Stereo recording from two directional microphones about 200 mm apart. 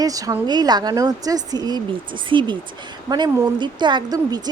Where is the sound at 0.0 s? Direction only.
15° right (ahead or behind).